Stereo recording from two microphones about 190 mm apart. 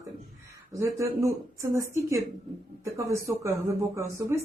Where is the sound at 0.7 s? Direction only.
15° right (ahead or behind).